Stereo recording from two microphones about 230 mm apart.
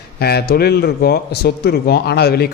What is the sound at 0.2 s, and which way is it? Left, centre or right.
Speech, left.